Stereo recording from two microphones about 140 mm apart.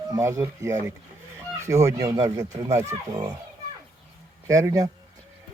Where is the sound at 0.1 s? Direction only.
20° right (ahead or behind).